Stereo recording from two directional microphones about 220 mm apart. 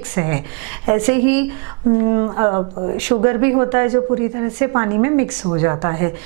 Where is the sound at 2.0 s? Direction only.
20° right (ahead or behind).